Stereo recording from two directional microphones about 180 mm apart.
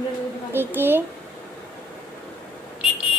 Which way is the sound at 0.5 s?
10° right (ahead or behind).